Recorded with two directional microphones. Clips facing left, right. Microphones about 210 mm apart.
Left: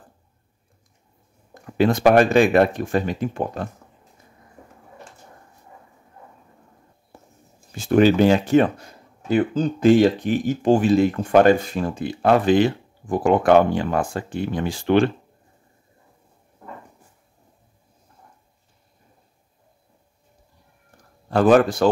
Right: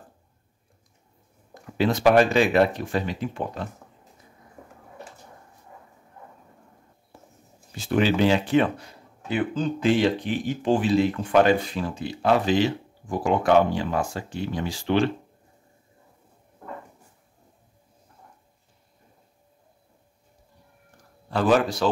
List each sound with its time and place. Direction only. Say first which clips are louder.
1.5 s speech: left 4 dB; 50° left (ahead or behind)
7.7 s speech: left 6 dB; 45° left (ahead or behind)
21.3 s speech: left 6 dB; 50° left (ahead or behind)